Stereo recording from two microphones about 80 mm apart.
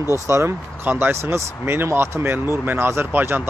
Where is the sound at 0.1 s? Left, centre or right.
Right.